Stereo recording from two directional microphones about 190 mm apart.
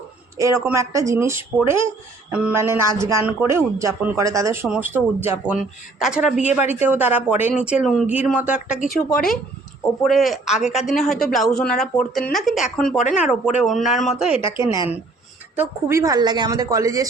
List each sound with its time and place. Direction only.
0.3 s speech: 15° right (ahead or behind); by 13.0 s 5° left (ahead or behind)
13.1 s speech: 5° right (ahead or behind)
14.5 s speech: 15° right (ahead or behind)